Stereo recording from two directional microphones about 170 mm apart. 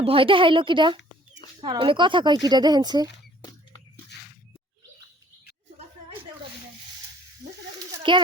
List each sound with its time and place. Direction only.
0.0 s a woman's voice: 35° right (ahead or behind)
4.1 s squish: 80° left
7.8 s a sound: 30° right (ahead or behind)